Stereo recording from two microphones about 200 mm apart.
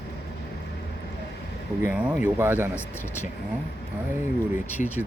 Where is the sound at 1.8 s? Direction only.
5° right (ahead or behind).